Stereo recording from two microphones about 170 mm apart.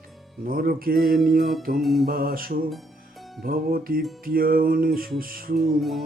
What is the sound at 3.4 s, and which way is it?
Mantra, 60° right (ahead or behind).